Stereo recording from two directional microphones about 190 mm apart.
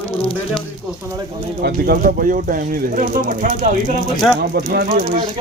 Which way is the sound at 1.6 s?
50° right (ahead or behind).